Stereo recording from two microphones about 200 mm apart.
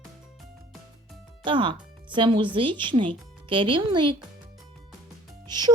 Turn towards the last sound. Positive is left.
turn(degrees=-20)  # may be behind; listen again after turning